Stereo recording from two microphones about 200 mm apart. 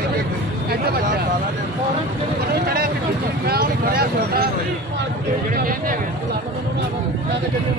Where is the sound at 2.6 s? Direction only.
50° right (ahead or behind).